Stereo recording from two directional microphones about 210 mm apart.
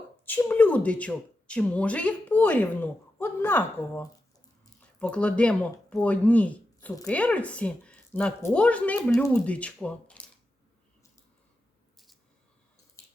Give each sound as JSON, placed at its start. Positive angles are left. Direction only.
{"t": 0.3, "sound": "speech", "side_deg": 10}
{"t": 7.1, "sound": "speech", "side_deg": 5}
{"t": 13.0, "sound": "a sound", "side_deg": 15}